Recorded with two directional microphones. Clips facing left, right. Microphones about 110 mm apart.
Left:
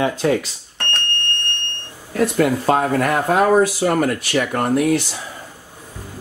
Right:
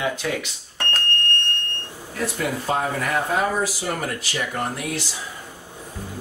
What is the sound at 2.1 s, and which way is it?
Speech, 65° left (ahead or behind).